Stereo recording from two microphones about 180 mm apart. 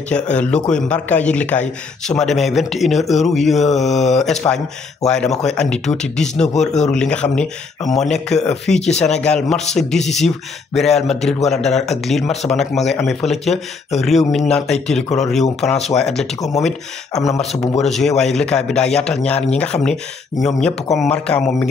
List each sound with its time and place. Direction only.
0.1 s a man's voice: 5° left (ahead or behind)
16.3 s speech: 20° left (ahead or behind)
16.6 s a man's voice: centre (ahead or behind)